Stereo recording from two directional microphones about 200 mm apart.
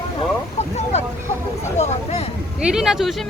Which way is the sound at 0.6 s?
35° left (ahead or behind).